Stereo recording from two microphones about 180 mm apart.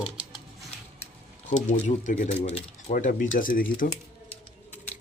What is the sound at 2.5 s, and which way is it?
Speech, 35° left (ahead or behind).